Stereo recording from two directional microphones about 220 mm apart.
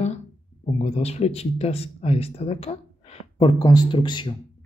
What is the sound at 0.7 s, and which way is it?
Speech, 30° left (ahead or behind).